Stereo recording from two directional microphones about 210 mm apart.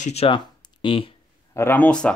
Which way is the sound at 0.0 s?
30° left (ahead or behind).